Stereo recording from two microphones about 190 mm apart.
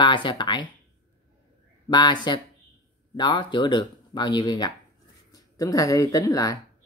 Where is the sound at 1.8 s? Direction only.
20° left (ahead or behind).